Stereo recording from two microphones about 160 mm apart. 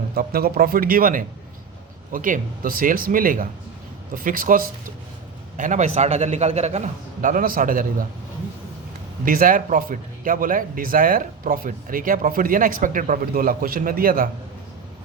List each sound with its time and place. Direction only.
0.1 s speech: 75° right (ahead or behind)
5.5 s a man's voice: 50° right (ahead or behind)
9.2 s speech: 60° right (ahead or behind)